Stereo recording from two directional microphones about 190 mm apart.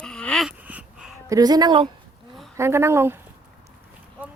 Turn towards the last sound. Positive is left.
turn(degrees=-15)  # may be behind; listen again after turning